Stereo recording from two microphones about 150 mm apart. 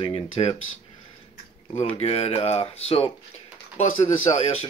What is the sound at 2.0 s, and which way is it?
Speech, 45° left (ahead or behind).